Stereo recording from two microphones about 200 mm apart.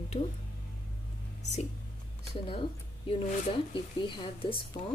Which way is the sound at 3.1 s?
25° left (ahead or behind).